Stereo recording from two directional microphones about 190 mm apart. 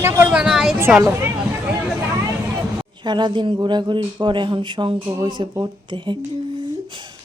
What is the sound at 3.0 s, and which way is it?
A man's voice, 25° right (ahead or behind).